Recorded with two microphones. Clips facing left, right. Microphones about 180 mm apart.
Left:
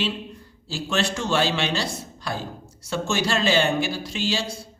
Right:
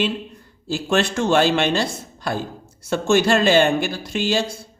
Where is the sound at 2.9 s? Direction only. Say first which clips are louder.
Right 8 dB; 55° right (ahead or behind).